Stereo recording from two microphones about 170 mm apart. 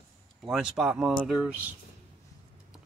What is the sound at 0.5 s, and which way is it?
Speech, 5° right (ahead or behind).